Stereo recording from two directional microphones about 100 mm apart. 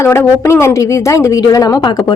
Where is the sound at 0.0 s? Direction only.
30° left (ahead or behind).